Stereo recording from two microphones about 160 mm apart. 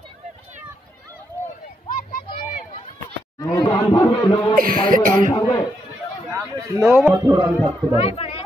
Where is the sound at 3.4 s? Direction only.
20° left (ahead or behind).